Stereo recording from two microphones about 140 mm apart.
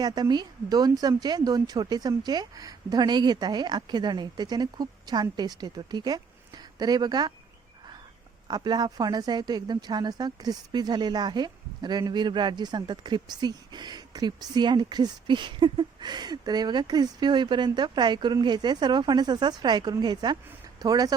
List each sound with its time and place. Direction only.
0.0 s speech: 30° right (ahead or behind)
8.4 s speech: 30° right (ahead or behind)